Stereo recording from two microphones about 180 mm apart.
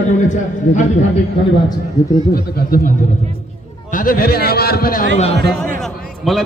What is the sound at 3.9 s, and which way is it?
A man's voice, 50° left (ahead or behind).